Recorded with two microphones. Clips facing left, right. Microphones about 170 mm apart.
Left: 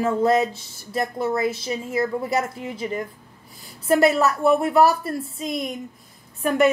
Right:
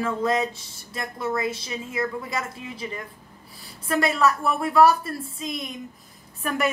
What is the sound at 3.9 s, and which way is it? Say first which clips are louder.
Speech: left 4 dB; 30° left (ahead or behind).